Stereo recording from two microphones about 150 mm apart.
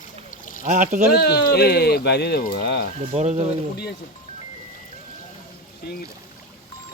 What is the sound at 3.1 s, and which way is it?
Speech, 45° right (ahead or behind).